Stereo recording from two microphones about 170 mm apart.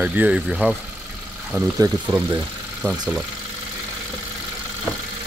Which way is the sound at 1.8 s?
15° right (ahead or behind).